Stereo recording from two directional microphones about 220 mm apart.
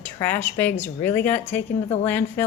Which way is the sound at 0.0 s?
10° left (ahead or behind).